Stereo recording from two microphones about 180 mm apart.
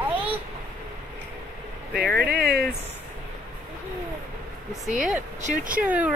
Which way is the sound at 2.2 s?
60° right (ahead or behind).